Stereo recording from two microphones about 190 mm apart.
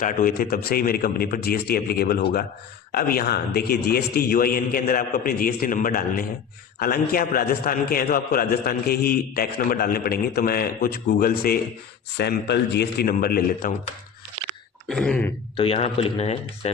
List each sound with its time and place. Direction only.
0.0 s a man's voice: 45° left (ahead or behind)
14.4 s a sound: 30° right (ahead or behind)
14.8 s speech: 5° left (ahead or behind)
15.5 s a man's voice: 30° left (ahead or behind)